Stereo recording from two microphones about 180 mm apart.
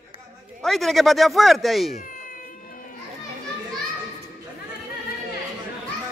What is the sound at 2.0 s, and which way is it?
Baby cry, 50° left (ahead or behind).